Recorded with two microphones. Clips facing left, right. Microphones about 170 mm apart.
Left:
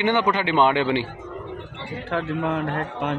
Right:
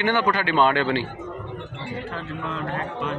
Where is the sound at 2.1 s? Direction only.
65° left (ahead or behind).